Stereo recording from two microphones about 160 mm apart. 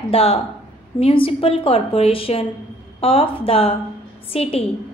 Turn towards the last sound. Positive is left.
turn(degrees=40)  # may be behind; listen again after turning